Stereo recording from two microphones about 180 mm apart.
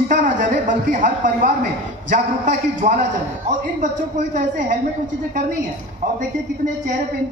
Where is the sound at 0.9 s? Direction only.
45° right (ahead or behind).